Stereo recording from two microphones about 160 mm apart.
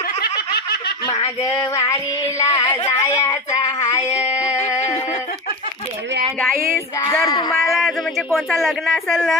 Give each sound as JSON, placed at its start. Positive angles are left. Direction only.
{"t": 0.2, "sound": "snicker", "side_deg": 80}
{"t": 1.4, "sound": "female singing", "side_deg": 20}
{"t": 2.9, "sound": "child singing", "side_deg": 20}
{"t": 4.1, "sound": "a sound", "side_deg": 40}
{"t": 4.4, "sound": "music", "side_deg": 20}
{"t": 7.1, "sound": "female singing", "side_deg": 25}
{"t": 7.6, "sound": "a man's voice", "side_deg": 0}